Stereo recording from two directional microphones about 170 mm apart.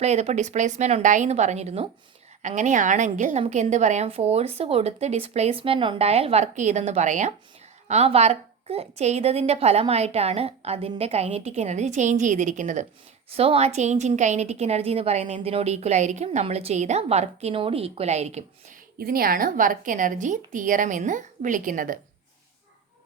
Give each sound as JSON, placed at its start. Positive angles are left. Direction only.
{"t": 0.0, "sound": "a woman's voice", "side_deg": -40}
{"t": 13.3, "sound": "a woman's voice", "side_deg": -35}
{"t": 18.9, "sound": "a woman's voice", "side_deg": -60}